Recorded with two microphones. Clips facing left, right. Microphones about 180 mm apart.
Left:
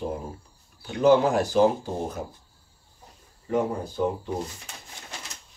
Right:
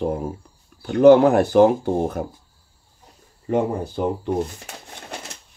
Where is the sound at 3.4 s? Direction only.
75° right (ahead or behind).